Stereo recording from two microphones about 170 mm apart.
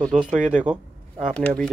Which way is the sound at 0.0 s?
Centre (ahead or behind).